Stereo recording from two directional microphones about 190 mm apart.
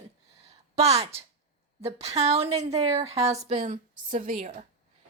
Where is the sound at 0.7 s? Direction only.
35° right (ahead or behind).